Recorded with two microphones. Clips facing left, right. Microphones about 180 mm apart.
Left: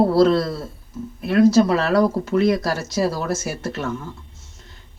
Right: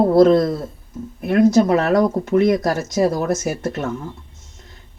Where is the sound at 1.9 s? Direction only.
20° right (ahead or behind).